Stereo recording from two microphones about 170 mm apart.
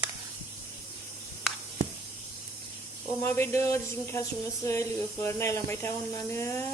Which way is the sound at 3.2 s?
15° left (ahead or behind).